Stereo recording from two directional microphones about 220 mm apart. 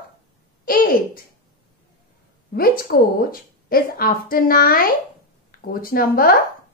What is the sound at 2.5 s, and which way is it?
Speech, 40° left (ahead or behind).